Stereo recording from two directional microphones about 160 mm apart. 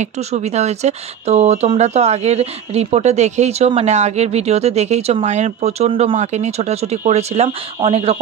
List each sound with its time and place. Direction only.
0.0 s speech: 45° right (ahead or behind)